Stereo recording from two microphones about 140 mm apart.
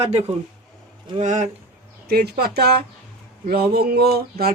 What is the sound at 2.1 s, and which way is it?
Speech, 90° right.